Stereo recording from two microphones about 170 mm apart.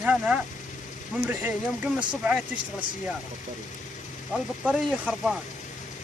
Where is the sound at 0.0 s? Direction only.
10° right (ahead or behind).